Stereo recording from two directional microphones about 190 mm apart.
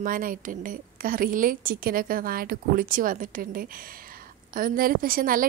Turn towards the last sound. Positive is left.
turn(degrees=-50)  # may be behind; listen again after turning